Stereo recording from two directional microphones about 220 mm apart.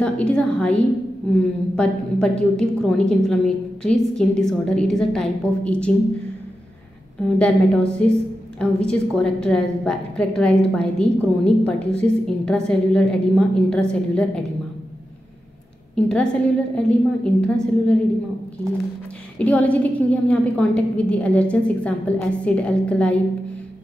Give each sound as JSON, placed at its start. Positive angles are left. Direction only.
{"t": 0.0, "sound": "a woman's voice", "side_deg": 5}
{"t": 7.3, "sound": "a woman's voice", "side_deg": 5}
{"t": 16.0, "sound": "a woman's voice", "side_deg": 5}
{"t": 19.3, "sound": "a woman's voice", "side_deg": 5}